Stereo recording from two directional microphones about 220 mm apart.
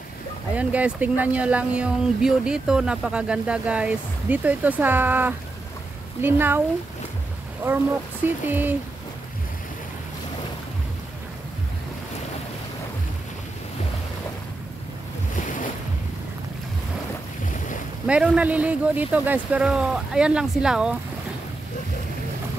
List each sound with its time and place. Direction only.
0.6 s speech: 5° right (ahead or behind)
7.6 s speech: 10° right (ahead or behind)
15.3 s boat: 35° left (ahead or behind)
18.0 s speech: 5° right (ahead or behind)